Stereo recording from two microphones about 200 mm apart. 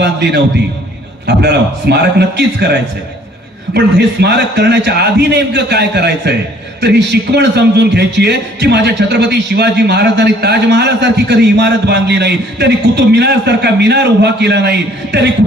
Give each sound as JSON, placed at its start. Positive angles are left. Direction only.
{"t": 0.0, "sound": "a man's voice", "side_deg": -55}
{"t": 3.8, "sound": "a man's voice", "side_deg": -55}